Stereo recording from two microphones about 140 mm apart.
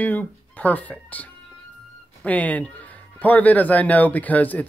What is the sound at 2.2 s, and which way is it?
A man's voice, 10° left (ahead or behind).